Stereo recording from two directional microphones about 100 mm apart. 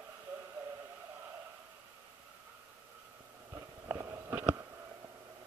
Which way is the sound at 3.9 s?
25° right (ahead or behind).